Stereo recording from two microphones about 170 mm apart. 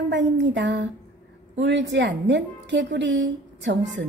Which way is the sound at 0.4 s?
90° right.